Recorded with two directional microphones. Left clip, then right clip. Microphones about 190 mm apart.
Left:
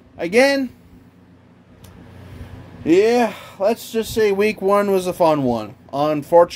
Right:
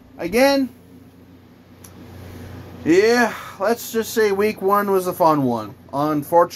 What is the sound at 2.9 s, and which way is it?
Speech, 25° left (ahead or behind).